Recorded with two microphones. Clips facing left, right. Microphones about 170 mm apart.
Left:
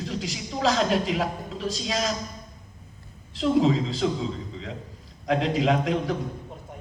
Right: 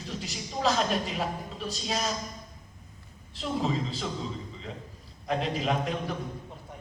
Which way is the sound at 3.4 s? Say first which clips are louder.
Left 8 dB; 90° left.